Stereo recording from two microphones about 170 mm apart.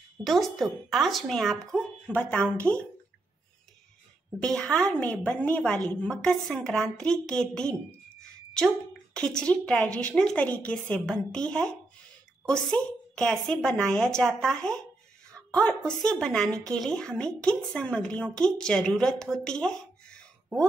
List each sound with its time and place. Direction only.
0.2 s a woman's voice: centre (ahead or behind)
4.4 s a woman's voice: 5° left (ahead or behind)
16.4 s a woman's voice: 20° right (ahead or behind)
16.7 s a woman's voice: 5° left (ahead or behind)
19.3 s a sound: 5° left (ahead or behind)